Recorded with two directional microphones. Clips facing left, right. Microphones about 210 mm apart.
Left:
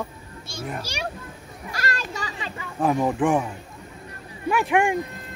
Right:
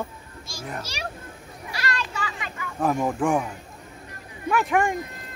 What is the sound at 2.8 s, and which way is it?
Speech, 5° left (ahead or behind).